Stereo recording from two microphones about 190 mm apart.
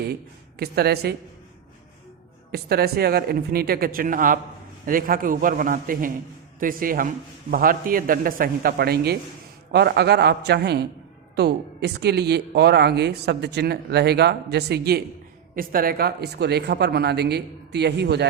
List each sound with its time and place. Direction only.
0.6 s speech: 55° right (ahead or behind)
2.5 s speech: 55° right (ahead or behind)